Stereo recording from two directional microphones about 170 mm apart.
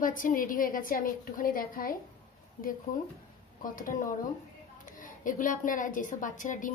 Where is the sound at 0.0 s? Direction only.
55° left (ahead or behind).